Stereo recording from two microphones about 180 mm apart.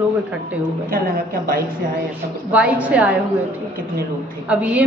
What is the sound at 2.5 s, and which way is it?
Speech, 5° right (ahead or behind).